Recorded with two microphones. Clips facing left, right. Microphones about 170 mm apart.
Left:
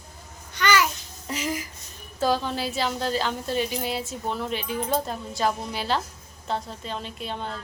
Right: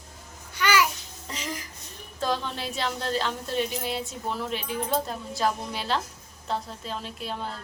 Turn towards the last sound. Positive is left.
turn(degrees=0)  # may be behind; listen again after turning